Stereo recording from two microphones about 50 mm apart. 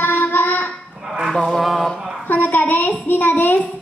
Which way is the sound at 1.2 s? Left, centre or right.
Centre.